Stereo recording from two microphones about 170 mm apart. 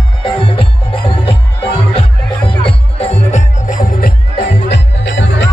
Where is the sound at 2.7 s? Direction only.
35° left (ahead or behind); by 4.1 s 55° left (ahead or behind).